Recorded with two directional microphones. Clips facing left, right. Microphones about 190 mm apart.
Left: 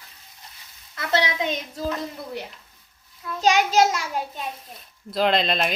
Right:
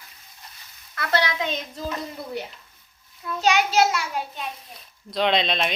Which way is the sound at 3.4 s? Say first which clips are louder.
Left 1 dB; 40° left (ahead or behind).